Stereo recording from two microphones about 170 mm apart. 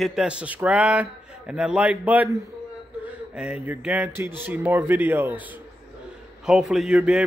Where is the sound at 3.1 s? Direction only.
5° right (ahead or behind).